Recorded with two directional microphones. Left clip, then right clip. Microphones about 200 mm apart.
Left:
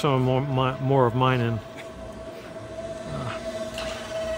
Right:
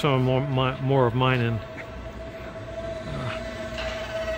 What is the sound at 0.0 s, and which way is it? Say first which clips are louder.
Speech: even; 5° left (ahead or behind).